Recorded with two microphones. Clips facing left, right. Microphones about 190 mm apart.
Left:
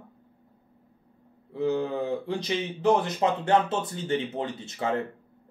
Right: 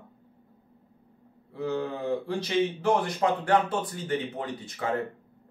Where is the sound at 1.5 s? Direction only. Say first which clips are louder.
Left 4 dB; 20° left (ahead or behind).